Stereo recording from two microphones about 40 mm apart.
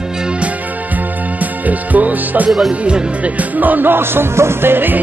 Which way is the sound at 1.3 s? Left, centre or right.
Right.